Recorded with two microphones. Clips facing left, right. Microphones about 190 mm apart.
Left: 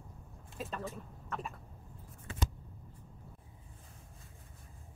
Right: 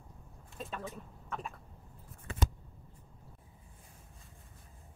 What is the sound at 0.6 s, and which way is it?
Speech, centre (ahead or behind).